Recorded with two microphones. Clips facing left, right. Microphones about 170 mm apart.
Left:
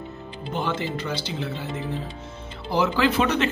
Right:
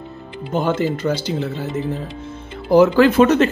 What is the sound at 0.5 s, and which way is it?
Speech, 45° right (ahead or behind).